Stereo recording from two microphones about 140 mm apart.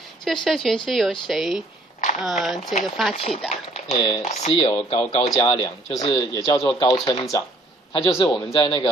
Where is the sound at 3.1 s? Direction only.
45° left (ahead or behind).